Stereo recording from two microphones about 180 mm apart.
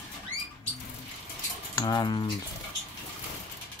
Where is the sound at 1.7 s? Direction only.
20° left (ahead or behind).